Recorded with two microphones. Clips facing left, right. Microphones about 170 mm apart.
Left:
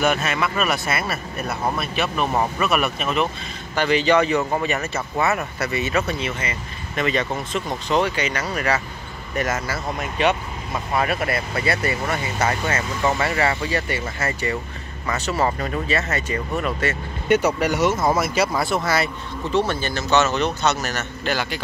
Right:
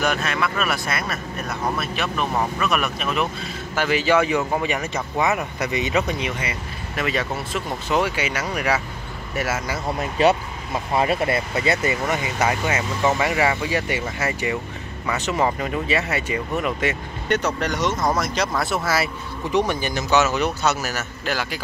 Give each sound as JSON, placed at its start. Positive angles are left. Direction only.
{"t": 0.0, "sound": "speech", "side_deg": 5}
{"t": 9.9, "sound": "speech", "side_deg": -35}
{"t": 10.7, "sound": "speech", "side_deg": -25}
{"t": 17.3, "sound": "speech", "side_deg": 10}
{"t": 19.5, "sound": "speech", "side_deg": -15}